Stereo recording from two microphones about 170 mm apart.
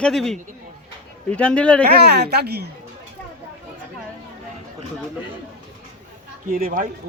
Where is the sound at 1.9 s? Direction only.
75° right (ahead or behind).